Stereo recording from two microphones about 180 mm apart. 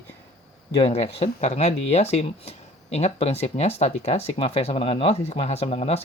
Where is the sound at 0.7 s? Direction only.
35° left (ahead or behind).